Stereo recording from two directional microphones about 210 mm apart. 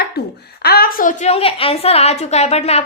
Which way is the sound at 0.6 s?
45° left (ahead or behind).